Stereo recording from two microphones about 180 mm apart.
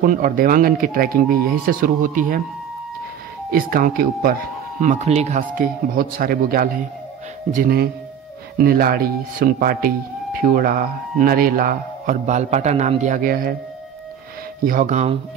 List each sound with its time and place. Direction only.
0.0 s speech: 50° right (ahead or behind)
3.4 s speech: 50° right (ahead or behind)
14.6 s speech: 50° right (ahead or behind)